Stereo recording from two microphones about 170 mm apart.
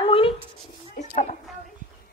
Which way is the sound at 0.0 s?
30° left (ahead or behind).